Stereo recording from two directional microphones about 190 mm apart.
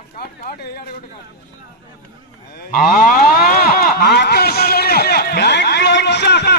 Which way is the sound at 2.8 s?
45° left (ahead or behind).